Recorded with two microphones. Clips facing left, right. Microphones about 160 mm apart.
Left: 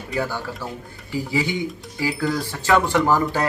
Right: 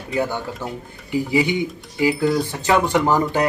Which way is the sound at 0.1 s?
20° right (ahead or behind).